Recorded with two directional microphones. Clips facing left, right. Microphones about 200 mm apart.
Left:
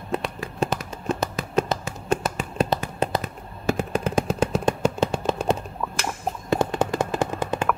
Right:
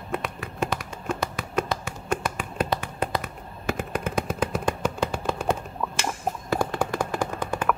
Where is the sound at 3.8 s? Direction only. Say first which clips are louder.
Left 3 dB; 30° left (ahead or behind).